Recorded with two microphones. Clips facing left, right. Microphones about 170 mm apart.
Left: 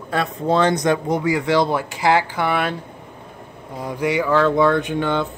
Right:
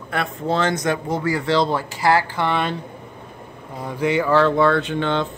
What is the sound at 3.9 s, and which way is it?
Speech, 10° left (ahead or behind).